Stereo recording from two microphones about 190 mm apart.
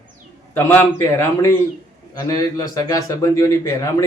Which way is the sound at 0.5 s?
15° left (ahead or behind).